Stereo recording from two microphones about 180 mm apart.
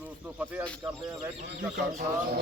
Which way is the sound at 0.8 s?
20° right (ahead or behind).